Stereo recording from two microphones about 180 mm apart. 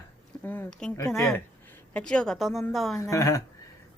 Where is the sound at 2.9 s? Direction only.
15° left (ahead or behind).